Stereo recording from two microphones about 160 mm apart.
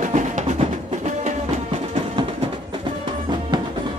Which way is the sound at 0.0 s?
50° right (ahead or behind).